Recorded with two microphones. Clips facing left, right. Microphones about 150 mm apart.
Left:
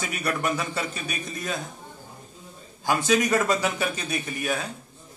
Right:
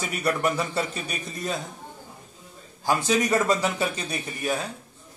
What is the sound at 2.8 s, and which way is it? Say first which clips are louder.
A man's voice: left 1 dB; 30° right (ahead or behind).